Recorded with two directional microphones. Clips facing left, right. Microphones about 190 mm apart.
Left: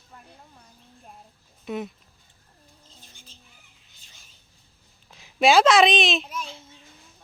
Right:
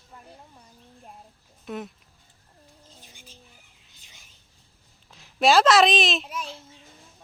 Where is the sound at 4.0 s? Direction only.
20° right (ahead or behind).